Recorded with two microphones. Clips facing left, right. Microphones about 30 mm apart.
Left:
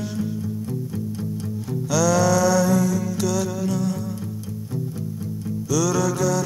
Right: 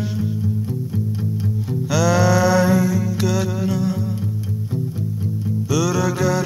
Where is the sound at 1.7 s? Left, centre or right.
Right.